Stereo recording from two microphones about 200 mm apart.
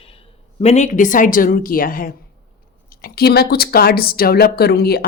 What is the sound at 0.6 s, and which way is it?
A woman's voice, 35° left (ahead or behind).